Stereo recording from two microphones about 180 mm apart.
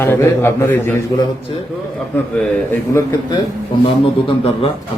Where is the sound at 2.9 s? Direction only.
20° left (ahead or behind).